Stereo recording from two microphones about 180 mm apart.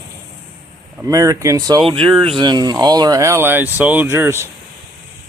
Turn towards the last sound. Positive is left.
turn(degrees=-15)  # may be behind; listen again after turning